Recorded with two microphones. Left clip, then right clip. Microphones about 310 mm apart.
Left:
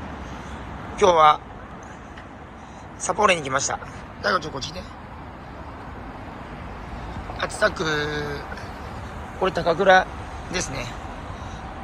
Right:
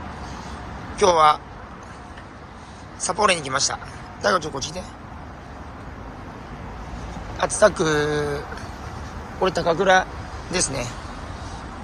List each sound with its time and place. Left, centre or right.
0.9 s a man's voice: centre
3.1 s a man's voice: centre
7.3 s a man's voice: centre